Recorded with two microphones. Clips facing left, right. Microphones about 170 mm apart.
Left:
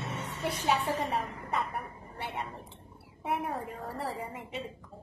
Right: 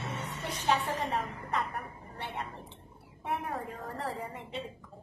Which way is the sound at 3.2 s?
5° left (ahead or behind).